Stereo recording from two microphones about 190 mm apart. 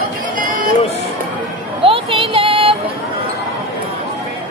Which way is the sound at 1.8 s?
25° right (ahead or behind).